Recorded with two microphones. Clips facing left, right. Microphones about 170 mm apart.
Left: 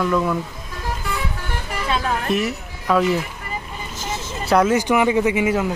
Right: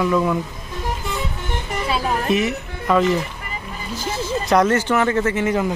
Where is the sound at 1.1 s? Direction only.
20° right (ahead or behind).